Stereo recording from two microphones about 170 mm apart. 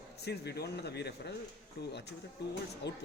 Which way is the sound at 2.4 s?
90° left.